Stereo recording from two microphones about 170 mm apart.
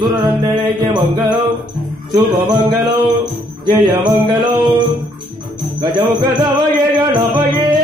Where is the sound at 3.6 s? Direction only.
25° right (ahead or behind).